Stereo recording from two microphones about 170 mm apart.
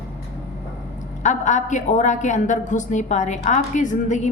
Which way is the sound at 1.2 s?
45° left (ahead or behind).